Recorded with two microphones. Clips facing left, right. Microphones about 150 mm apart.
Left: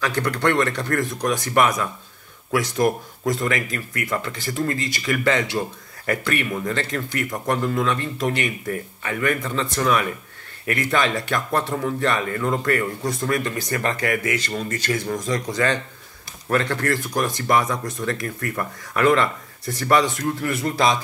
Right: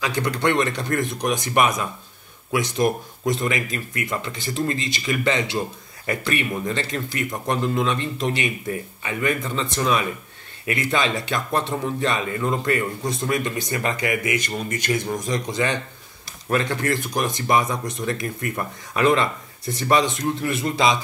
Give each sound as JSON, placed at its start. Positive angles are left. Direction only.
{"t": 0.0, "sound": "speech", "side_deg": -15}